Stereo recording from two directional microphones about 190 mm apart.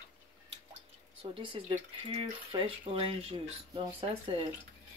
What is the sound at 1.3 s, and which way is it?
Speech, 25° right (ahead or behind).